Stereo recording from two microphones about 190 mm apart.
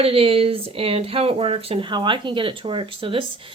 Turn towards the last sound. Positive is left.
turn(degrees=-30)  # may be behind; listen again after turning